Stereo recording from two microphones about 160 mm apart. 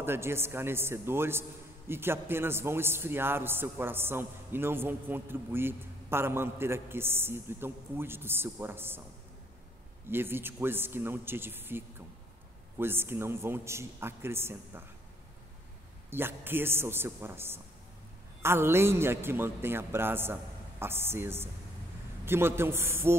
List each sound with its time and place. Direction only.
0.0 s a man's voice: 15° right (ahead or behind)
10.0 s a man's voice: 15° right (ahead or behind)
16.1 s a man's voice: 15° right (ahead or behind)